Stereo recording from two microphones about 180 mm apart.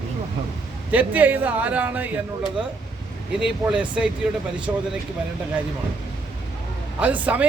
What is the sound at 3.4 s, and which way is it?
Speech, 5° right (ahead or behind).